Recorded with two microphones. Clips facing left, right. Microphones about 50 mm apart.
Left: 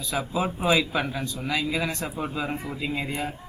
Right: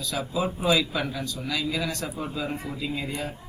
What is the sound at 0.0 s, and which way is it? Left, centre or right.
A man's voice, left.